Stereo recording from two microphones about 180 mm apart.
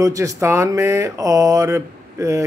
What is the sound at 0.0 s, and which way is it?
Speech, 20° right (ahead or behind).